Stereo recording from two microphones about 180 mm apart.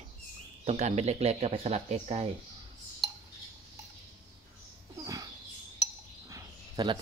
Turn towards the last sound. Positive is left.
turn(degrees=-25)  # may be behind; listen again after turning